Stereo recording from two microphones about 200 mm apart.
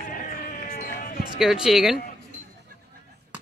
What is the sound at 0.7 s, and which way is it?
Basketball bounce, 45° left (ahead or behind).